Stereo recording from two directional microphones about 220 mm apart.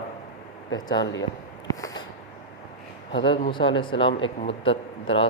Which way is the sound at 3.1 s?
55° left (ahead or behind).